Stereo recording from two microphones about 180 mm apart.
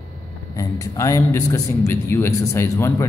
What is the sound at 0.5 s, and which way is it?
A man's voice, 20° left (ahead or behind).